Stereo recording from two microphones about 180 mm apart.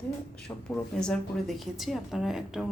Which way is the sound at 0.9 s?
5° left (ahead or behind).